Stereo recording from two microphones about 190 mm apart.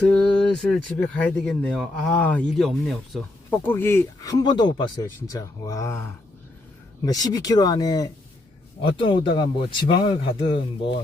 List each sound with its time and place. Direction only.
0.0 s speech: 5° left (ahead or behind); by 11.0 s 25° left (ahead or behind)